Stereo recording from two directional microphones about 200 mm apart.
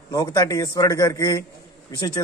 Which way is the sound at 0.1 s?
20° left (ahead or behind).